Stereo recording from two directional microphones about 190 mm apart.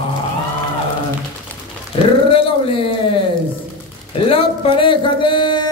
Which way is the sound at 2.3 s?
30° left (ahead or behind).